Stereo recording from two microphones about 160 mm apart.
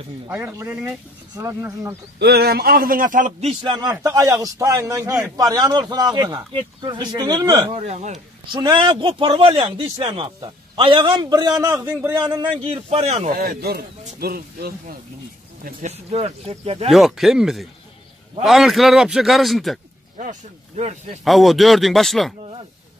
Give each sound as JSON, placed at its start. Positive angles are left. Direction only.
{"t": 0.3, "sound": "a man's voice", "side_deg": -15}
{"t": 2.1, "sound": "speech", "side_deg": -85}
{"t": 4.0, "sound": "a man's voice", "side_deg": -20}
{"t": 7.8, "sound": "speech", "side_deg": -45}
{"t": 8.5, "sound": "speech", "side_deg": -30}
{"t": 11.7, "sound": "speech", "side_deg": -10}
{"t": 12.1, "sound": "a man's voice", "side_deg": -25}
{"t": 12.9, "sound": "speech", "side_deg": -45}
{"t": 13.3, "sound": "speech", "side_deg": -75}
{"t": 15.6, "sound": "speech", "side_deg": -45}
{"t": 16.9, "sound": "a man's voice", "side_deg": 0}
{"t": 20.2, "sound": "speech", "side_deg": -50}
{"t": 21.2, "sound": "a man's voice", "side_deg": 0}